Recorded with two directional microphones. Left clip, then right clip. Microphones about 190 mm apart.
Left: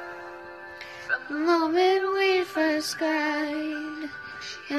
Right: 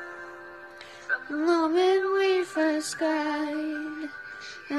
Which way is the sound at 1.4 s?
15° right (ahead or behind).